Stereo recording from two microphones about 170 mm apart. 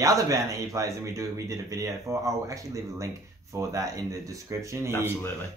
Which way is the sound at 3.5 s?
20° right (ahead or behind).